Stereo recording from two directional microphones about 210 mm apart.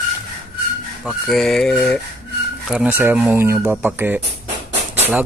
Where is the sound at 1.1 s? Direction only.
Centre (ahead or behind).